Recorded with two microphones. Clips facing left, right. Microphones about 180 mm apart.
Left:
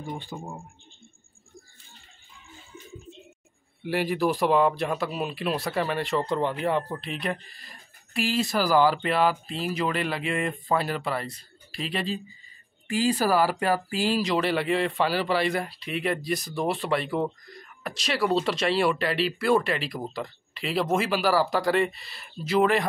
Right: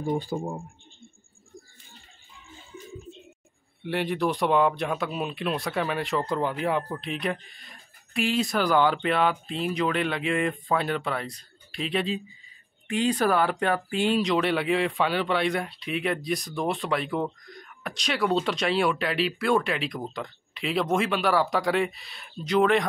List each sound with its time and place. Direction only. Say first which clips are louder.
0.0 s speech: right 8 dB; 40° right (ahead or behind)
3.8 s speech: left 1 dB; 5° left (ahead or behind)